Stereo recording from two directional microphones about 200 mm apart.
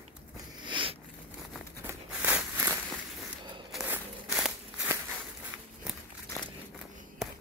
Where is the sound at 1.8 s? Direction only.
10° right (ahead or behind).